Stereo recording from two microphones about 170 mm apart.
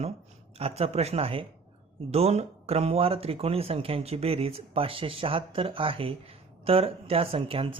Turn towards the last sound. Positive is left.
turn(degrees=-30)  # may be behind; listen again after turning